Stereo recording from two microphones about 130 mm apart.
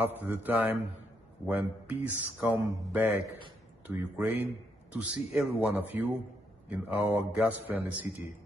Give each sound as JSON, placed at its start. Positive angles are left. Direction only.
{"t": 0.2, "sound": "speech", "side_deg": -10}